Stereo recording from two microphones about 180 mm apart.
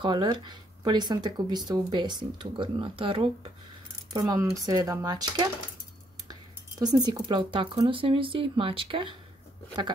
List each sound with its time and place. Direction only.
0.0 s speech: 25° right (ahead or behind)
6.8 s speech: 20° right (ahead or behind)